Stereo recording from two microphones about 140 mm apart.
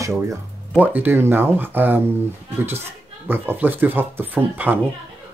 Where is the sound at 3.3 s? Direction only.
15° right (ahead or behind).